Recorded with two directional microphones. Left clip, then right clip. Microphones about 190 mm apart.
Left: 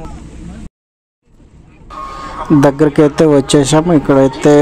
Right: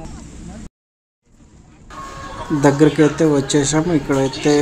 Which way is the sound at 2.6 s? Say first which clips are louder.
Left 2 dB; 35° left (ahead or behind).